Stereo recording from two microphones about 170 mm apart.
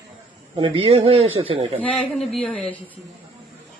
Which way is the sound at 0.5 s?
30° right (ahead or behind).